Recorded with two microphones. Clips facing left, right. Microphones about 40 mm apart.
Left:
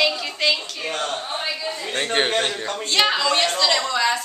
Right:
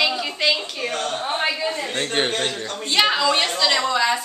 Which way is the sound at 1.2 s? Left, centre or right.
Right.